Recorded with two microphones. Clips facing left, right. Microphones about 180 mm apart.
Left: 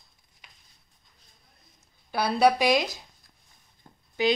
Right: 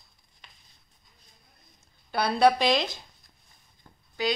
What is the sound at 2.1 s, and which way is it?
Speech, 10° left (ahead or behind).